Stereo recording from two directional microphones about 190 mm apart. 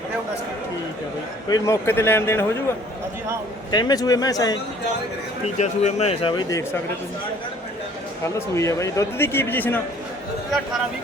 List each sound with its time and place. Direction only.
1.5 s a man's voice: 20° left (ahead or behind)
3.7 s speech: 20° left (ahead or behind)
5.5 s speech: 35° left (ahead or behind)
8.4 s a man's voice: 15° left (ahead or behind)